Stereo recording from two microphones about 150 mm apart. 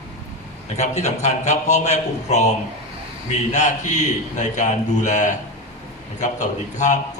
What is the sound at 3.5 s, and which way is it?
A man's voice, 50° left (ahead or behind).